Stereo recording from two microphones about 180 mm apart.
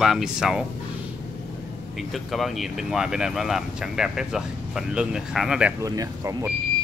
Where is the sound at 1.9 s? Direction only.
Centre (ahead or behind).